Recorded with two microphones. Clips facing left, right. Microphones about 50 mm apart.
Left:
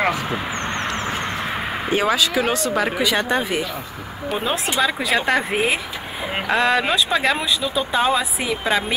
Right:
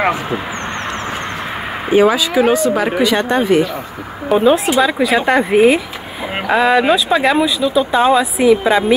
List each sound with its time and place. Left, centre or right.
1.9 s speech: centre